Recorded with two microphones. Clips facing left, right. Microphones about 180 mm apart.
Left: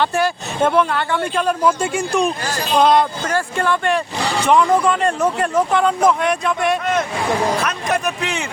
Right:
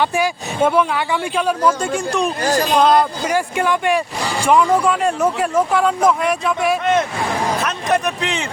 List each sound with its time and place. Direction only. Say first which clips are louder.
0.0 s speech: even; 10° right (ahead or behind)
2.4 s speech: right 7 dB; 40° right (ahead or behind)
2.7 s speech: left 1 dB; centre (ahead or behind)
3.2 s speech: right 1 dB; 10° right (ahead or behind)